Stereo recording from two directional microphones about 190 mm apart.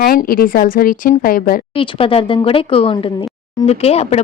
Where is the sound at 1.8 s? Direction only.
30° left (ahead or behind).